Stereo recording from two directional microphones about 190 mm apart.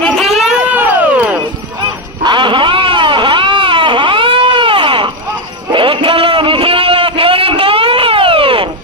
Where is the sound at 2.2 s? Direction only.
25° right (ahead or behind).